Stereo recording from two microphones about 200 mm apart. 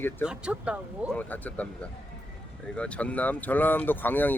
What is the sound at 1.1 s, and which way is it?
Speech, 10° left (ahead or behind).